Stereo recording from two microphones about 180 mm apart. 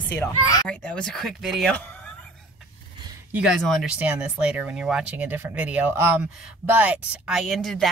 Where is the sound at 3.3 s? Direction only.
Centre (ahead or behind).